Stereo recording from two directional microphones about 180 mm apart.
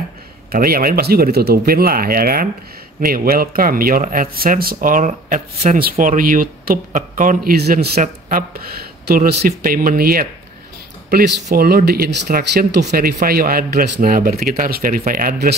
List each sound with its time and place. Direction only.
0.5 s speech: 55° right (ahead or behind)